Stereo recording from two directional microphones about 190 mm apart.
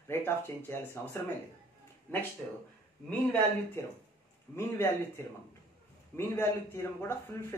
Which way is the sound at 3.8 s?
15° left (ahead or behind).